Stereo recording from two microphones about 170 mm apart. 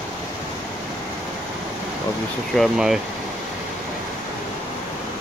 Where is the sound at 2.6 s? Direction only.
Centre (ahead or behind).